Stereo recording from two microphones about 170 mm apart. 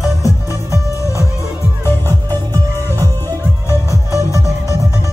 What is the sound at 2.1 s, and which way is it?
Music, 15° left (ahead or behind).